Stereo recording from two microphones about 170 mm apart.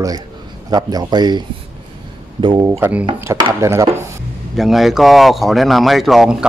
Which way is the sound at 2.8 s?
10° right (ahead or behind).